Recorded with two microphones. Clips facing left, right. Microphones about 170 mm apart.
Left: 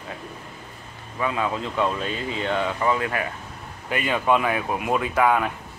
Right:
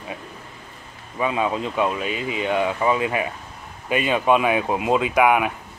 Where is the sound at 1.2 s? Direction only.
20° right (ahead or behind).